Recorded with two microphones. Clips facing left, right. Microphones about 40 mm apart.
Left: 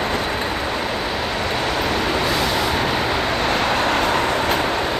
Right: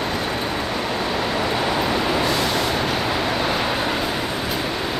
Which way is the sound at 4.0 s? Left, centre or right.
Left.